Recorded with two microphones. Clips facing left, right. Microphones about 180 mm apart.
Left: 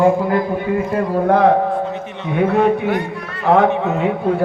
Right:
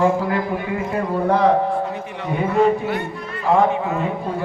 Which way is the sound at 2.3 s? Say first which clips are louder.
Left 2 dB; 65° left (ahead or behind).